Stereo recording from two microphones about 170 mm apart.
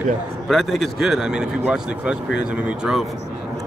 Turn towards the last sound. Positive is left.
turn(degrees=-5)  # may be behind; listen again after turning